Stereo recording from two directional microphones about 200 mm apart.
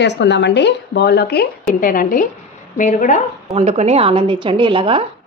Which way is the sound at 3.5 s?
30° right (ahead or behind).